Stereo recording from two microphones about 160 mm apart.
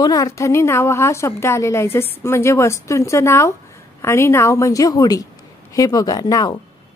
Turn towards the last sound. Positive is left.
turn(degrees=25)  # may be behind; listen again after turning